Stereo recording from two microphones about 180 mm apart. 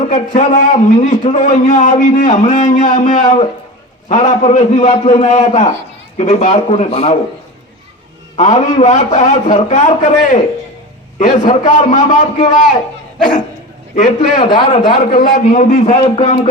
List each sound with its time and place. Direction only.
0.1 s a man's voice: 45° left (ahead or behind)
8.4 s a man's voice: 40° left (ahead or behind)
13.9 s a man's voice: 40° left (ahead or behind)
14.5 s a man's voice: 25° left (ahead or behind)
15.1 s a man's voice: 45° left (ahead or behind)